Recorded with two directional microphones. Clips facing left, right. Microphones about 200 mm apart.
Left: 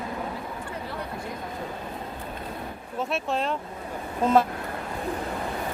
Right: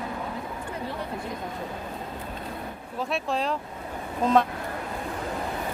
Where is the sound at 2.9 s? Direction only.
Centre (ahead or behind).